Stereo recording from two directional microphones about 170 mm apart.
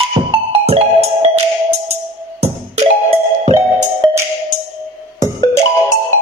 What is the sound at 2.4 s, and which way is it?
Music, 40° right (ahead or behind).